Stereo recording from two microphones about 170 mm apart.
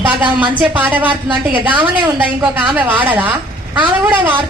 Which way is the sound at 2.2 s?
10° right (ahead or behind).